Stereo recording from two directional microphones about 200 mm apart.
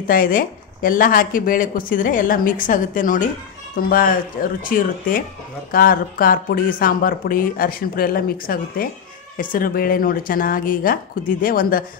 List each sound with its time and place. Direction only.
0.0 s speech: 45° left (ahead or behind)